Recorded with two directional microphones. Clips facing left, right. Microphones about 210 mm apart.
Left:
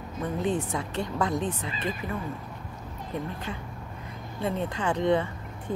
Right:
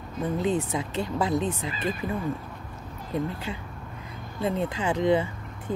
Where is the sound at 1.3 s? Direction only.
35° right (ahead or behind).